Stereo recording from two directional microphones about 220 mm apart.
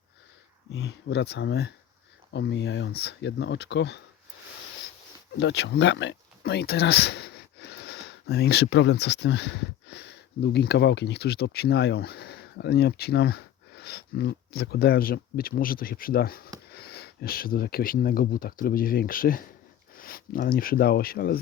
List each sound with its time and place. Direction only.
0.7 s speech: 50° left (ahead or behind)
5.4 s speech: 55° left (ahead or behind)